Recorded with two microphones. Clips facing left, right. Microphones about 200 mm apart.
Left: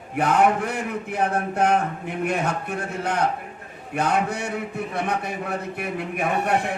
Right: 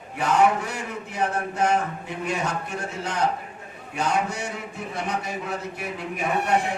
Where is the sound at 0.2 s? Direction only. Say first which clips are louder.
Left 1 dB; 55° left (ahead or behind).